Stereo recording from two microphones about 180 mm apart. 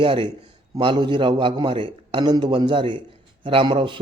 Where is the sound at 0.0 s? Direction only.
30° right (ahead or behind).